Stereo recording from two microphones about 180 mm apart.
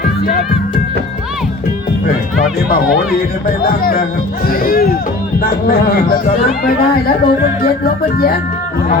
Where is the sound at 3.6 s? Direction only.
55° left (ahead or behind).